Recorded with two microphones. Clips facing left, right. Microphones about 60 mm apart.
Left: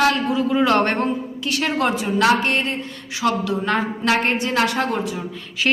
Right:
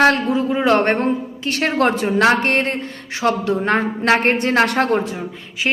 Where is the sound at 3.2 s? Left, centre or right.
Right.